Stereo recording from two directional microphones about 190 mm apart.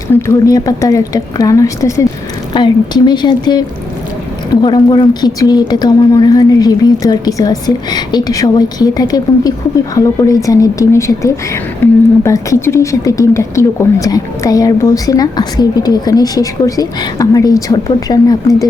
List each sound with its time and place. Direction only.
0.1 s a woman's voice: 15° left (ahead or behind)
4.6 s a woman's voice: 25° left (ahead or behind)